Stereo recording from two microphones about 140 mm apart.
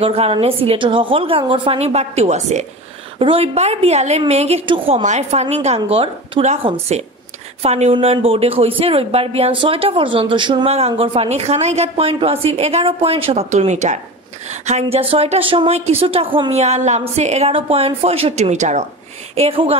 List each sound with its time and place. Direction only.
0.0 s a woman's voice: 45° right (ahead or behind)
3.2 s speech: 40° right (ahead or behind); by 18.9 s 60° right (ahead or behind)
19.3 s speech: 45° right (ahead or behind)